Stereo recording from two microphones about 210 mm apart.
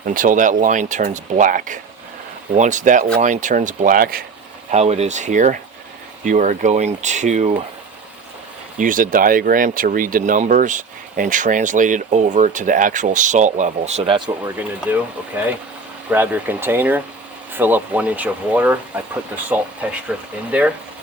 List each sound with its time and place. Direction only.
0.0 s speech: 40° right (ahead or behind)
4.7 s speech: 30° right (ahead or behind)
8.8 s speech: 40° right (ahead or behind); by 14.5 s 25° right (ahead or behind)
14.9 s speech: 10° right (ahead or behind)